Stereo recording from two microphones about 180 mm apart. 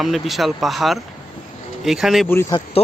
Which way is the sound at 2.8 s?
35° left (ahead or behind).